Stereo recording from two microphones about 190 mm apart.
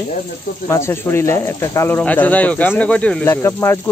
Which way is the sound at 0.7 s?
15° left (ahead or behind).